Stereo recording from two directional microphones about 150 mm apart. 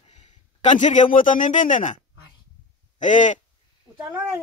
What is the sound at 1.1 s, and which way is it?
Speech, 60° left (ahead or behind).